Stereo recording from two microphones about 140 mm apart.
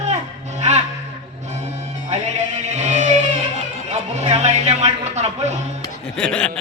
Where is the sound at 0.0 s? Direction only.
55° right (ahead or behind).